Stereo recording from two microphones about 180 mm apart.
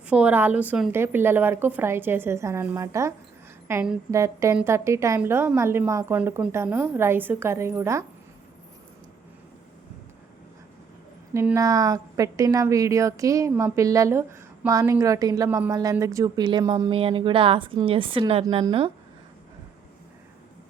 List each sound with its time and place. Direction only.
0.1 s a woman's voice: 10° right (ahead or behind)
11.3 s a woman's voice: 15° right (ahead or behind)